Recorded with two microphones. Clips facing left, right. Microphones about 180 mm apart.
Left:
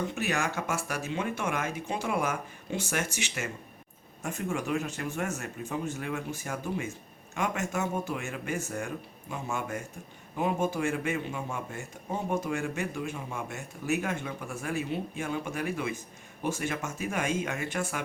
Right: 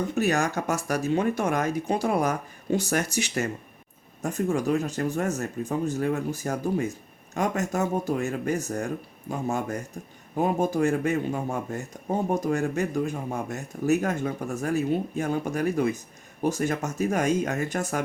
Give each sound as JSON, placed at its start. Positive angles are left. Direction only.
{"t": 0.1, "sound": "speech", "side_deg": -40}